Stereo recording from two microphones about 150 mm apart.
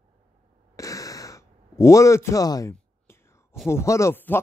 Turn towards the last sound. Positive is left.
turn(degrees=15)  # may be behind; listen again after turning